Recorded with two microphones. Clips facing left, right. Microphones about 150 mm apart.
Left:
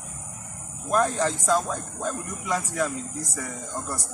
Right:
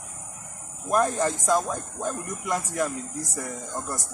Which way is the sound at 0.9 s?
15° right (ahead or behind).